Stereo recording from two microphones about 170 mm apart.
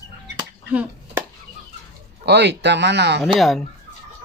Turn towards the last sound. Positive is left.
turn(degrees=0)  # may be behind; listen again after turning